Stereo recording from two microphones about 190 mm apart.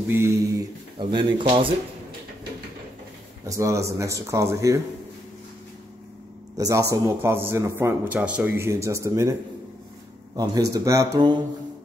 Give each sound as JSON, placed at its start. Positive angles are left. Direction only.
{"t": 0.1, "sound": "speech", "side_deg": -15}
{"t": 3.4, "sound": "a man's voice", "side_deg": -15}
{"t": 6.5, "sound": "a man's voice", "side_deg": -15}
{"t": 10.3, "sound": "speech", "side_deg": -20}